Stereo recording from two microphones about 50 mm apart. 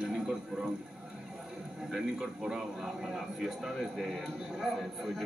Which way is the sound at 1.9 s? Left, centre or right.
Centre.